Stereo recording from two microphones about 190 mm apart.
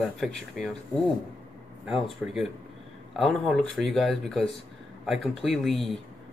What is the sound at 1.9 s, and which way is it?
Speech, centre (ahead or behind).